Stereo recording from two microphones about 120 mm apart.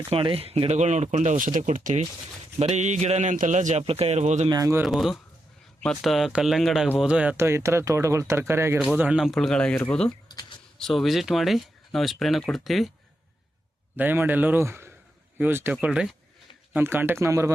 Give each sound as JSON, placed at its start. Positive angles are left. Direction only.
{"t": 0.1, "sound": "speech", "side_deg": -50}
{"t": 2.6, "sound": "speech", "side_deg": -70}
{"t": 3.8, "sound": "speech", "side_deg": -55}
{"t": 4.2, "sound": "speech", "side_deg": -75}
{"t": 4.4, "sound": "speech", "side_deg": -35}
{"t": 4.9, "sound": "speech", "side_deg": 0}
{"t": 7.3, "sound": "speech", "side_deg": -20}
{"t": 8.8, "sound": "speech", "side_deg": -10}
{"t": 10.1, "sound": "speech", "side_deg": 35}
{"t": 10.8, "sound": "speech", "side_deg": 0}
{"t": 13.9, "sound": "speech", "side_deg": -15}